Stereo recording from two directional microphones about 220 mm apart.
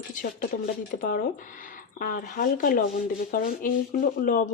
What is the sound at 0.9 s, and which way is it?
Speech, 35° left (ahead or behind).